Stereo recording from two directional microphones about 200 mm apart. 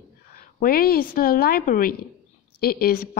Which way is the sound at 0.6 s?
50° left (ahead or behind).